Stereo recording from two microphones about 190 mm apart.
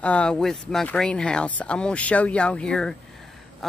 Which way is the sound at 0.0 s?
5° left (ahead or behind).